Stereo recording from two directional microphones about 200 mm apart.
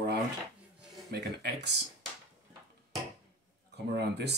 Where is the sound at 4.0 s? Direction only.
55° right (ahead or behind).